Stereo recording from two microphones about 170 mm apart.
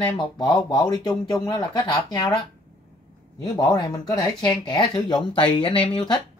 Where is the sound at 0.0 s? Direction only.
25° left (ahead or behind).